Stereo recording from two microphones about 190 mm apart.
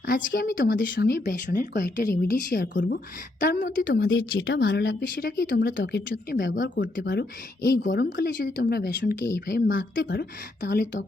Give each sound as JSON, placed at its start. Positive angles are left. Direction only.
{"t": 0.0, "sound": "speech", "side_deg": 50}
{"t": 4.3, "sound": "speech", "side_deg": 70}